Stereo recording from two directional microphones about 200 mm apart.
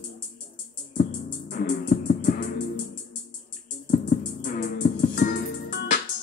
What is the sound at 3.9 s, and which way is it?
Music, 40° left (ahead or behind).